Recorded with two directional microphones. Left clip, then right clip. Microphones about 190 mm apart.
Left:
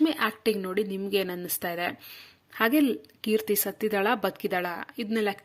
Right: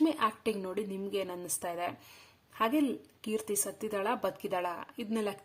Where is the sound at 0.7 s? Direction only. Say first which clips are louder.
Left 8 dB; 20° left (ahead or behind).